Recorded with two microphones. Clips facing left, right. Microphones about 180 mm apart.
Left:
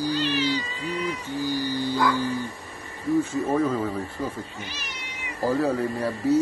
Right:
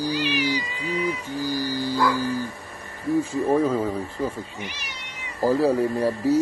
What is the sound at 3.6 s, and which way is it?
Speech, 20° right (ahead or behind).